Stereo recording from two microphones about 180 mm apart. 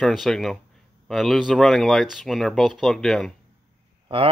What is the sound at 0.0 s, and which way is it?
Speech, centre (ahead or behind).